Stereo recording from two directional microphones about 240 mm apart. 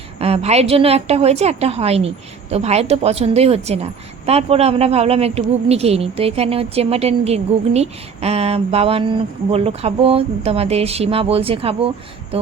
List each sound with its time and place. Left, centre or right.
0.2 s a woman's voice: right